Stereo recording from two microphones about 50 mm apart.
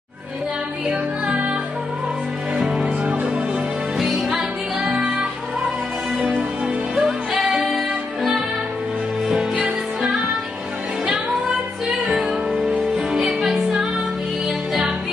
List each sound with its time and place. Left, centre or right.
1.2 s music: right
2.5 s music: centre
3.1 s music: right
4.0 s music: centre
7.0 s music: centre
12.1 s music: centre